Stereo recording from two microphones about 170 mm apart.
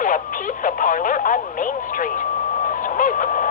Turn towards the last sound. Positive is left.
turn(degrees=50)  # may be behind; listen again after turning